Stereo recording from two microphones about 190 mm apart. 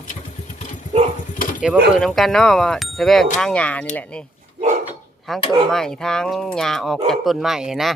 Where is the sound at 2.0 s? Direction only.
Centre (ahead or behind).